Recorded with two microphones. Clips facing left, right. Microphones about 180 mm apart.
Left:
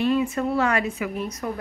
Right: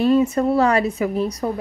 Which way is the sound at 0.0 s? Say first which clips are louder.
Right 6 dB; 40° right (ahead or behind).